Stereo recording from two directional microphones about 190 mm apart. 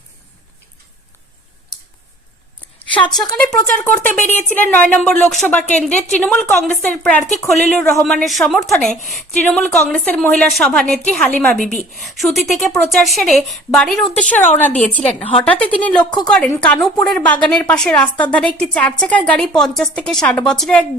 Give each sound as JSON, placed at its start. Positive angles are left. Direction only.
{"t": 2.6, "sound": "a sound", "side_deg": 10}
{"t": 3.3, "sound": "a woman's voice", "side_deg": 5}
{"t": 14.3, "sound": "a woman's voice", "side_deg": 40}
{"t": 14.6, "sound": "a woman's voice", "side_deg": 5}